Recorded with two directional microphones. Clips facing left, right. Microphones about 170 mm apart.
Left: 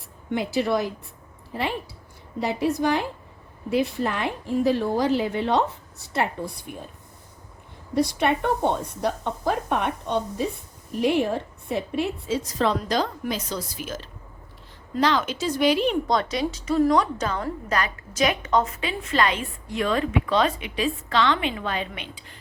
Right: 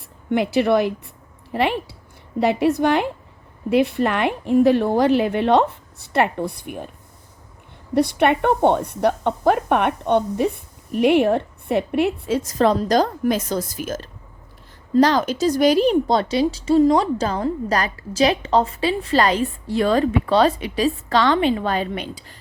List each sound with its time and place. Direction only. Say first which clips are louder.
0.3 s a woman's voice: right 6 dB; 65° right (ahead or behind)
7.9 s a woman's voice: right 5 dB; 60° right (ahead or behind); by 22.4 s 40° right (ahead or behind)